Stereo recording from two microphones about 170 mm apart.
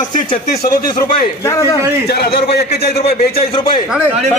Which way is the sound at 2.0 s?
65° left (ahead or behind).